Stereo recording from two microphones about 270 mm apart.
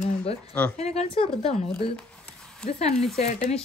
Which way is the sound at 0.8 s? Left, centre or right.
Left.